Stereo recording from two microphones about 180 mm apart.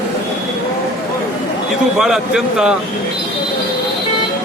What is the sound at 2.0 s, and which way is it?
Speech, 5° right (ahead or behind).